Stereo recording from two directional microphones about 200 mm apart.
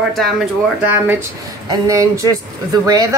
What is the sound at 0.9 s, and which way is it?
Speech, 10° right (ahead or behind).